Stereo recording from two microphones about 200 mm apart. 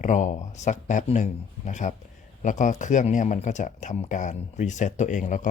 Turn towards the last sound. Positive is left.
turn(degrees=40)  # may be behind; listen again after turning